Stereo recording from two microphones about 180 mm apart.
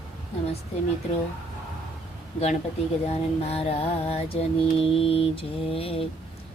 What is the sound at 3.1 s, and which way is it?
Mantra, 35° left (ahead or behind).